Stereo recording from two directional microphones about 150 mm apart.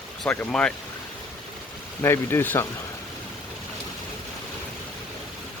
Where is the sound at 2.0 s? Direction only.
15° left (ahead or behind).